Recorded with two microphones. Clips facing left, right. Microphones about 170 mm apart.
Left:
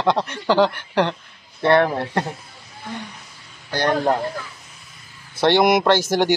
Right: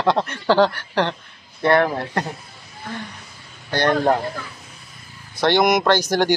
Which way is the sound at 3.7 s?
10° left (ahead or behind).